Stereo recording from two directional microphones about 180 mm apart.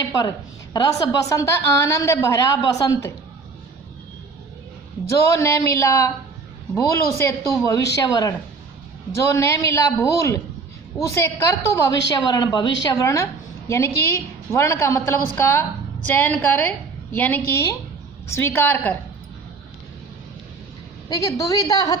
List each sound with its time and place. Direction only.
0.9 s a woman's voice: 20° left (ahead or behind)
5.0 s a woman's voice: 15° left (ahead or behind)
21.1 s a woman's voice: 20° left (ahead or behind)